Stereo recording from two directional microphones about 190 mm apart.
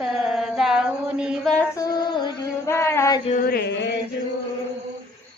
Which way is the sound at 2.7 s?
15° left (ahead or behind).